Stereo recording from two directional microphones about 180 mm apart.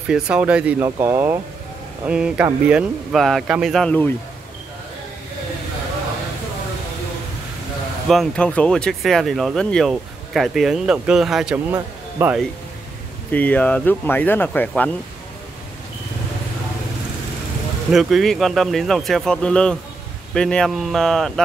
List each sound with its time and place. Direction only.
0.1 s speech: 5° right (ahead or behind)
8.1 s speech: 5° left (ahead or behind); by 12.4 s 15° right (ahead or behind)
13.3 s speech: 10° left (ahead or behind)
17.9 s speech: centre (ahead or behind)